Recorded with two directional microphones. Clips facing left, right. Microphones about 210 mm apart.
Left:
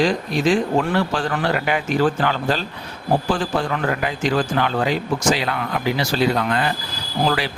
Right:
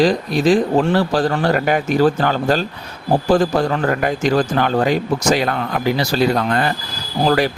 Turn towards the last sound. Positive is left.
turn(degrees=-45)  # may be behind; listen again after turning